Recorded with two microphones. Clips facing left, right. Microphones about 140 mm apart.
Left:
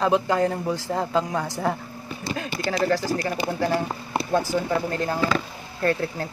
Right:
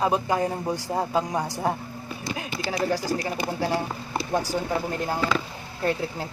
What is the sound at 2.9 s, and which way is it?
Speech, 15° right (ahead or behind).